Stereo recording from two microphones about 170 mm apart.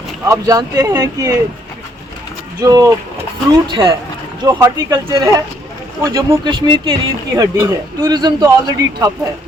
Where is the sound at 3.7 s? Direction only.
30° right (ahead or behind).